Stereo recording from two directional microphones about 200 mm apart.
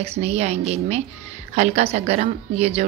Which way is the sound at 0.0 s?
30° right (ahead or behind).